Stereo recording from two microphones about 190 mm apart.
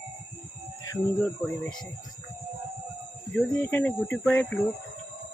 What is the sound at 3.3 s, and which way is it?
Speech, 10° left (ahead or behind).